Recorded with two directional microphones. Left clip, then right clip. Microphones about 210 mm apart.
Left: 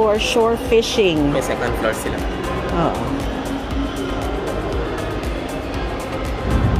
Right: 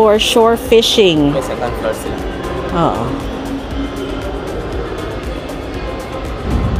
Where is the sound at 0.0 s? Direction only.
40° right (ahead or behind).